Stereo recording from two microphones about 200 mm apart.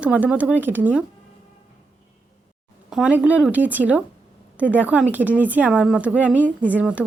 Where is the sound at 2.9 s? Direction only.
5° right (ahead or behind).